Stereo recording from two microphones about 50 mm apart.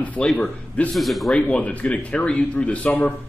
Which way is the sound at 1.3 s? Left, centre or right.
Left.